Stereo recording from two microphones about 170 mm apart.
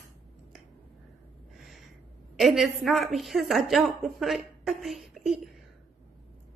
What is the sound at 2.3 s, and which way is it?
A woman's voice, centre (ahead or behind).